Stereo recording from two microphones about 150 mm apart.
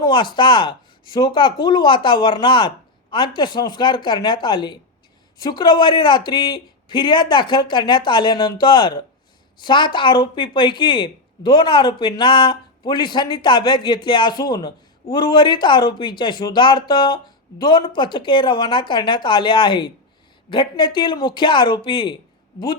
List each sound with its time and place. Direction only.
0.0 s a woman's voice: 30° left (ahead or behind)